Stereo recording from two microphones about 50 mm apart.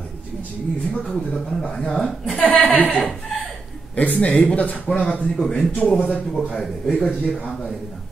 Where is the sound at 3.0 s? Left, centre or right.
Centre.